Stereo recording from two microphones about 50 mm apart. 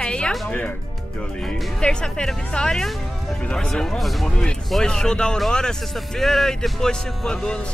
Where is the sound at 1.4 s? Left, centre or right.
Centre.